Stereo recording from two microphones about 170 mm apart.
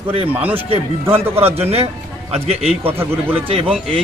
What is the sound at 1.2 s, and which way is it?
Speech, 15° right (ahead or behind).